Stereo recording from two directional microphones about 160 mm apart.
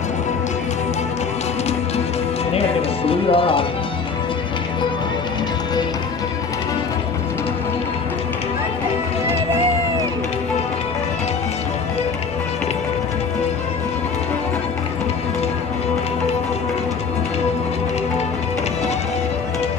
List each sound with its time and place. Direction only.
2.5 s music: 40° left (ahead or behind)